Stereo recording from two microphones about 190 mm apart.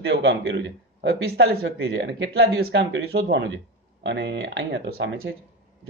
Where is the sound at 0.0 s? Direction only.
60° right (ahead or behind).